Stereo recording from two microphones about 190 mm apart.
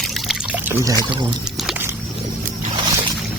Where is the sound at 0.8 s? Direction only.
20° right (ahead or behind).